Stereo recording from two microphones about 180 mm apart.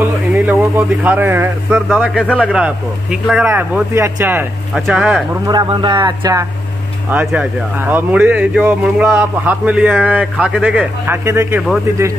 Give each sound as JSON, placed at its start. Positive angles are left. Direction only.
{"t": 0.0, "sound": "a sound", "side_deg": -10}
{"t": 1.9, "sound": "a man's voice", "side_deg": -5}
{"t": 5.5, "sound": "speech", "side_deg": -25}
{"t": 7.1, "sound": "speech", "side_deg": -10}